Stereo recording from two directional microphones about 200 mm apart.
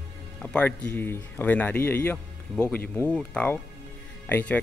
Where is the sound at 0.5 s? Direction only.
10° left (ahead or behind).